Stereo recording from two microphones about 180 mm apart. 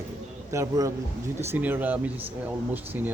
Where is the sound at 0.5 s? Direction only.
15° right (ahead or behind).